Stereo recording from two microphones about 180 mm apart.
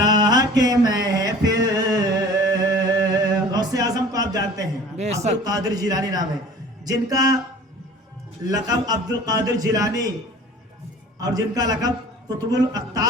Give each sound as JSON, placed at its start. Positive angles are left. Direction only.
{"t": 0.0, "sound": "a sound", "side_deg": -20}
{"t": 4.9, "sound": "a man's voice", "side_deg": -40}
{"t": 5.4, "sound": "a man's voice", "side_deg": -20}
{"t": 8.4, "sound": "a man's voice", "side_deg": -20}
{"t": 11.2, "sound": "a man's voice", "side_deg": -20}